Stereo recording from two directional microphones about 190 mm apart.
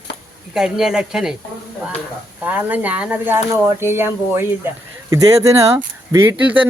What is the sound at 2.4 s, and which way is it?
Speech, 10° right (ahead or behind).